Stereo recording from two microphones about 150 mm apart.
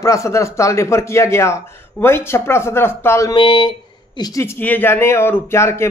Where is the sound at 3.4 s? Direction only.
35° left (ahead or behind).